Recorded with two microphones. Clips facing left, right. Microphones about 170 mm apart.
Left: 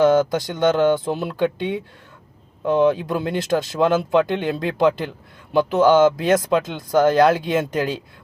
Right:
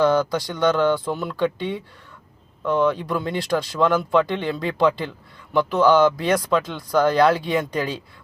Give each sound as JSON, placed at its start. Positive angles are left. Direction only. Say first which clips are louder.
{"t": 0.0, "sound": "speech", "louder": "left 3 dB", "side_deg": 20}